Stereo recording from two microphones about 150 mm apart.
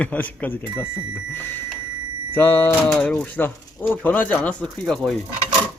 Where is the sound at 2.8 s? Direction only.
5° left (ahead or behind).